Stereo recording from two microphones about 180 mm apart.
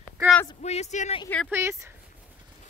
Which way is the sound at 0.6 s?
40° left (ahead or behind).